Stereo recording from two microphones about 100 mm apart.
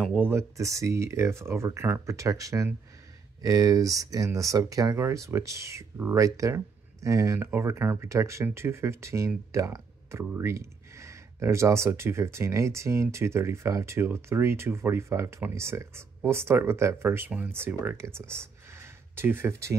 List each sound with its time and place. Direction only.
0.0 s speech: 15° right (ahead or behind)